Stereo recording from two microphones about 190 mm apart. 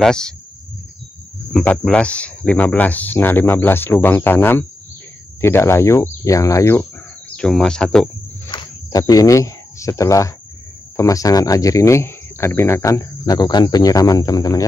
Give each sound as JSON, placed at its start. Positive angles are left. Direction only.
{"t": 0.0, "sound": "speech", "side_deg": 5}
{"t": 1.5, "sound": "speech", "side_deg": 5}
{"t": 8.5, "sound": "cricket", "side_deg": 20}
{"t": 11.0, "sound": "speech", "side_deg": 15}